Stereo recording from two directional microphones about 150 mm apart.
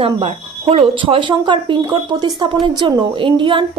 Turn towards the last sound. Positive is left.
turn(degrees=-35)  # may be behind; listen again after turning